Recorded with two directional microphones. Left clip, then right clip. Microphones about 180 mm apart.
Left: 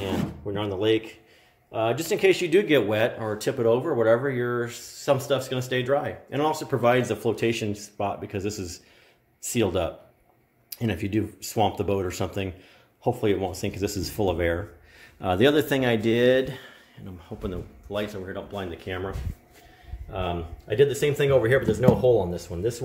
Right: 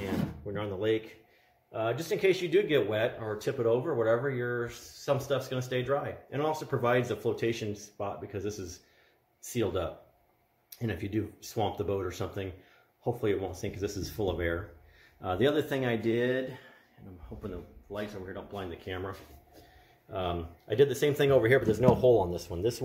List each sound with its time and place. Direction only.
0.5 s speech: 25° left (ahead or behind); by 18.0 s 40° left (ahead or behind)
18.2 s speech: 25° left (ahead or behind)
18.9 s speech: 5° left (ahead or behind)
20.1 s speech: 20° right (ahead or behind)